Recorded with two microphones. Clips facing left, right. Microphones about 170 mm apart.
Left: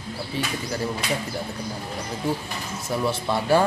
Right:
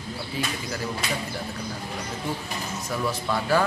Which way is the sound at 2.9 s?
25° left (ahead or behind).